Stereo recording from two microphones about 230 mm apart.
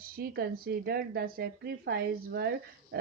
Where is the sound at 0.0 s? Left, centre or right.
Right.